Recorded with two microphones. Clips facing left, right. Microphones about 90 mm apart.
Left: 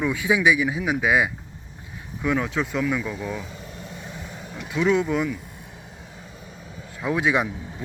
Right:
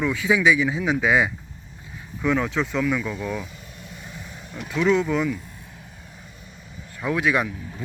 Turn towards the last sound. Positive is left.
turn(degrees=20)  # may be behind; listen again after turning